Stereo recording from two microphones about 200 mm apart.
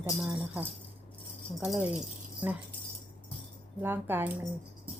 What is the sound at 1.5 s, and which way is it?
Speech, centre (ahead or behind).